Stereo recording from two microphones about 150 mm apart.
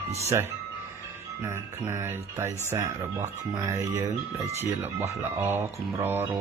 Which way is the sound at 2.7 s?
20° right (ahead or behind).